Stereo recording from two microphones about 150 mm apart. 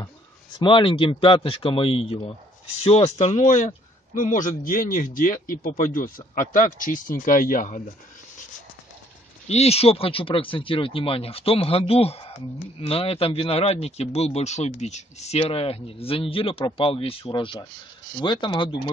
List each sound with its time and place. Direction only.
0.6 s speech: 35° left (ahead or behind); by 7.8 s 60° left (ahead or behind)
9.5 s speech: 45° left (ahead or behind)